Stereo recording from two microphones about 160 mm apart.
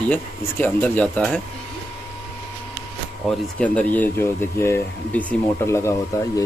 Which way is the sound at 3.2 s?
10° left (ahead or behind).